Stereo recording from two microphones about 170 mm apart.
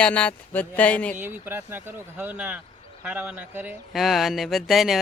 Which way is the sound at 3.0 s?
10° right (ahead or behind).